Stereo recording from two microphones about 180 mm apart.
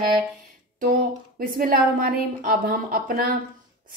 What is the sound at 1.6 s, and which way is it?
Speech, 55° right (ahead or behind).